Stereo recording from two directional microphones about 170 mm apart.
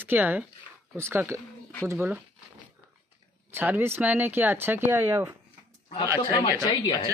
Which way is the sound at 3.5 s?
15° right (ahead or behind).